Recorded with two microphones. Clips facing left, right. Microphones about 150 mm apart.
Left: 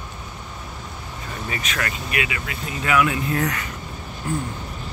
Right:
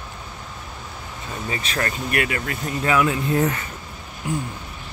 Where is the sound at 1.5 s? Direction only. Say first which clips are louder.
Right 2 dB; 30° right (ahead or behind).